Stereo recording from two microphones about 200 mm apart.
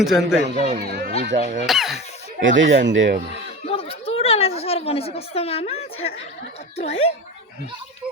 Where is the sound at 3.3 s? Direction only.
30° left (ahead or behind).